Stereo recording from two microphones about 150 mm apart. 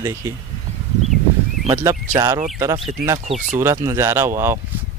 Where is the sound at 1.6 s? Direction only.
20° right (ahead or behind).